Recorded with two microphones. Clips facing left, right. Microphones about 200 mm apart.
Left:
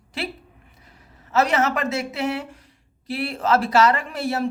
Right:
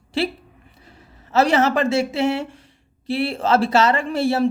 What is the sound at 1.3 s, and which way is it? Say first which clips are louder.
Speech: right 3 dB; 30° right (ahead or behind).